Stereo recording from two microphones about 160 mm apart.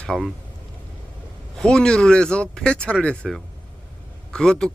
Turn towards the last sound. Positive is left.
turn(degrees=5)  # may be behind; listen again after turning